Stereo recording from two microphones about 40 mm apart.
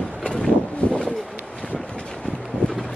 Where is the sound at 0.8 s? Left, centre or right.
Left.